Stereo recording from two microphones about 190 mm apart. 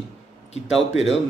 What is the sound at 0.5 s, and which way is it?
Speech, 80° left.